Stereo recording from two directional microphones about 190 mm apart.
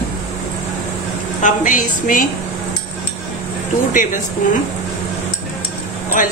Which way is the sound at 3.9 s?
45° left (ahead or behind).